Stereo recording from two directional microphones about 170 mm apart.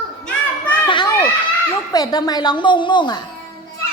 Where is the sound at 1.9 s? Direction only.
20° left (ahead or behind).